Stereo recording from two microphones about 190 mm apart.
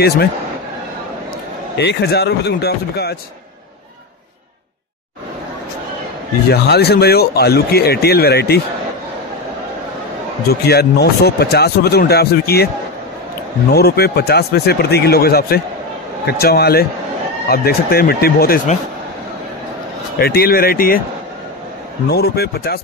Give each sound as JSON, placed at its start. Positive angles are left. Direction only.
{"t": 1.8, "sound": "speech", "side_deg": 60}
{"t": 6.5, "sound": "speech", "side_deg": 60}
{"t": 10.5, "sound": "speech", "side_deg": 55}
{"t": 13.7, "sound": "speech", "side_deg": 55}
{"t": 20.2, "sound": "speech", "side_deg": 55}
{"t": 22.1, "sound": "speech", "side_deg": 55}